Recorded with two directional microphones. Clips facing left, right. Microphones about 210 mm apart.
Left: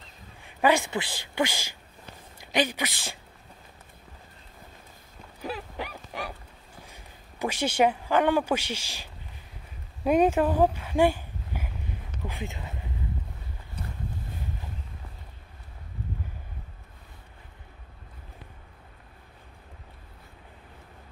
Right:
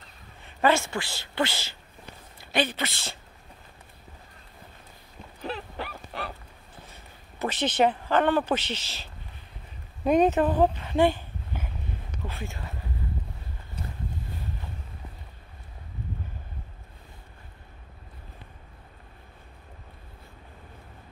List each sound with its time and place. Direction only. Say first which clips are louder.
0.4 s a man's voice: even; 15° left (ahead or behind)
5.4 s a sound: even; 10° left (ahead or behind)
6.9 s speech: even; 10° left (ahead or behind)